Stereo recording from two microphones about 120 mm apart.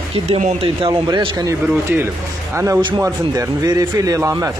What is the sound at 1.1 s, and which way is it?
Speech, 35° right (ahead or behind).